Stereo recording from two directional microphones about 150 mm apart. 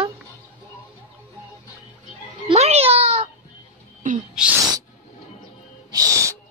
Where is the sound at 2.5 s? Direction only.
45° right (ahead or behind).